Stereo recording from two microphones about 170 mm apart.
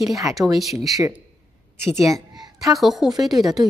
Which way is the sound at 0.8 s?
20° right (ahead or behind).